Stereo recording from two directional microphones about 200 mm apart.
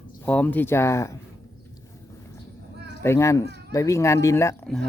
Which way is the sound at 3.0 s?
15° left (ahead or behind).